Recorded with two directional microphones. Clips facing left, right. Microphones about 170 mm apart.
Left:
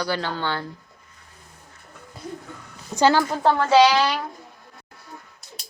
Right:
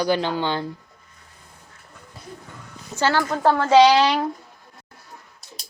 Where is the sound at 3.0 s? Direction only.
15° left (ahead or behind).